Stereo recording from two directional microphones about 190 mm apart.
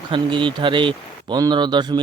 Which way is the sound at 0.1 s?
25° right (ahead or behind).